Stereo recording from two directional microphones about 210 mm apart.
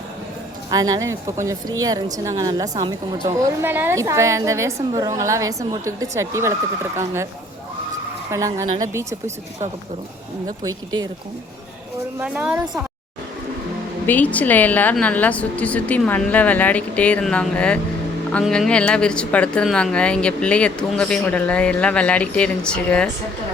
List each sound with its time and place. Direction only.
0.7 s a woman's voice: 15° right (ahead or behind)
8.3 s a woman's voice: 15° right (ahead or behind)
10.6 s a woman's voice: 15° right (ahead or behind)
12.2 s a woman's voice: 5° right (ahead or behind)
14.1 s a woman's voice: 5° left (ahead or behind)